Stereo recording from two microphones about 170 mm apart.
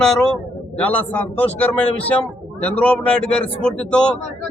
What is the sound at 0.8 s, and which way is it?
A man's voice, 10° left (ahead or behind).